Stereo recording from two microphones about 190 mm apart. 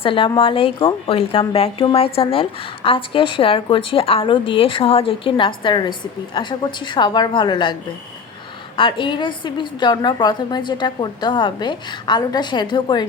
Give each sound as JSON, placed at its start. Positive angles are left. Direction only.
{"t": 0.0, "sound": "a woman's voice", "side_deg": 25}